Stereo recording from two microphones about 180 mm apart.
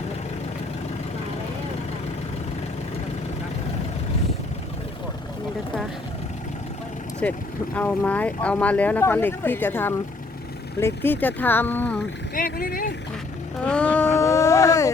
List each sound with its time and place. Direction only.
7.2 s speech: 10° left (ahead or behind)
12.3 s speech: 55° left (ahead or behind)
13.7 s speech: 5° left (ahead or behind)